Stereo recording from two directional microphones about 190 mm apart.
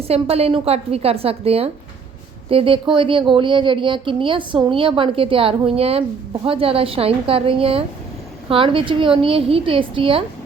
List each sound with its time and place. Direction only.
0.1 s a woman's voice: 30° right (ahead or behind)